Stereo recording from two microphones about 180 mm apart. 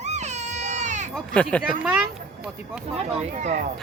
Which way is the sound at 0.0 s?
40° right (ahead or behind).